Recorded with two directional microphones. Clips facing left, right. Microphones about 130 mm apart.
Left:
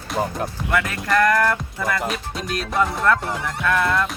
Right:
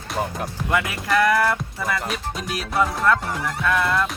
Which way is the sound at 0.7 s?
20° right (ahead or behind).